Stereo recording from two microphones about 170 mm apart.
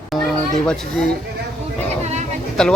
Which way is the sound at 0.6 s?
5° left (ahead or behind).